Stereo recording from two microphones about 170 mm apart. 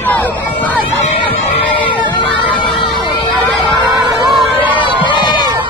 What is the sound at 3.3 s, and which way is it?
Crowd, centre (ahead or behind).